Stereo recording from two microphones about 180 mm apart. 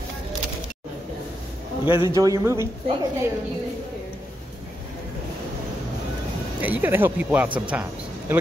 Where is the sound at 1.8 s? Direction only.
15° right (ahead or behind).